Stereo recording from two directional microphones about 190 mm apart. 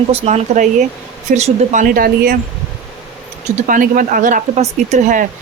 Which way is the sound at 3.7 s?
45° right (ahead or behind).